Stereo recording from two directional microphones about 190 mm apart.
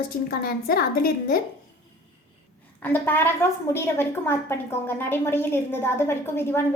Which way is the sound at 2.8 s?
10° left (ahead or behind).